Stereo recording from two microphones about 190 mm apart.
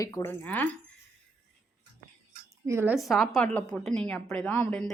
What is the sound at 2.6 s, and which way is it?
Speech, 15° right (ahead or behind).